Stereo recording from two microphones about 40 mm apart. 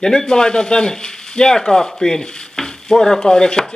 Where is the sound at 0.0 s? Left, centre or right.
Centre.